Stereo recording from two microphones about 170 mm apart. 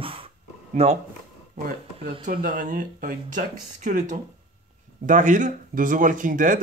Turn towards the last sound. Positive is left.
turn(degrees=-50)  # may be behind; listen again after turning